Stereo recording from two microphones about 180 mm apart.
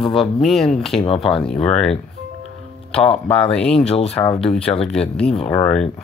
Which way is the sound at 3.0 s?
30° left (ahead or behind).